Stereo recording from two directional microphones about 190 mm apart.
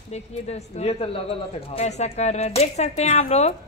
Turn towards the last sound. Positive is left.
turn(degrees=35)  # may be behind; listen again after turning